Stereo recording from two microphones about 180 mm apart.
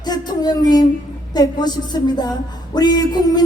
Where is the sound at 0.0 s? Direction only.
25° left (ahead or behind).